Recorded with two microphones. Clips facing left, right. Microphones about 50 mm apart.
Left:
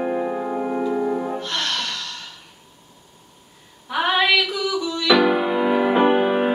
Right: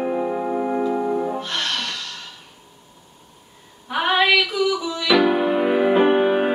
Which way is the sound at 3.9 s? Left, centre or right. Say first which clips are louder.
Right 1 dB; centre.